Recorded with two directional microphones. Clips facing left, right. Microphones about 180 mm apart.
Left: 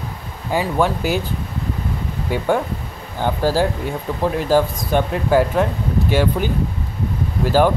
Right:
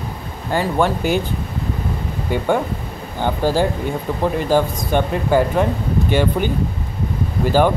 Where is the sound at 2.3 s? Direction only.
5° left (ahead or behind).